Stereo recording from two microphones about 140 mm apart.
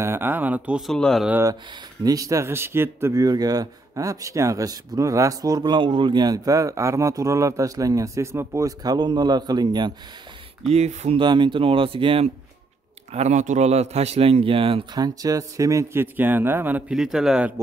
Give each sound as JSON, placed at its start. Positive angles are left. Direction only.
{"t": 0.0, "sound": "speech", "side_deg": -15}
{"t": 2.0, "sound": "speech", "side_deg": -25}
{"t": 10.7, "sound": "a man's voice", "side_deg": -55}
{"t": 11.1, "sound": "speech", "side_deg": -35}
{"t": 13.1, "sound": "a man's voice", "side_deg": -55}
{"t": 15.0, "sound": "speech", "side_deg": -25}